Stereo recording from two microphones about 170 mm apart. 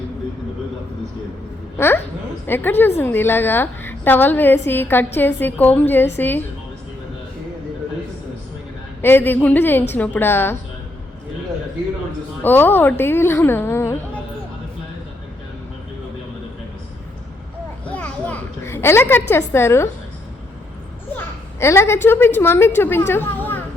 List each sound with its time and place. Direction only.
1.8 s a woman's voice: 15° left (ahead or behind)
9.0 s a woman's voice: 15° left (ahead or behind)
12.4 s a woman's voice: 10° left (ahead or behind)
17.8 s a sound: 10° left (ahead or behind)
19.3 s a woman's voice: 15° left (ahead or behind)
21.2 s a sound: 15° left (ahead or behind)
22.4 s a woman's voice: 15° left (ahead or behind)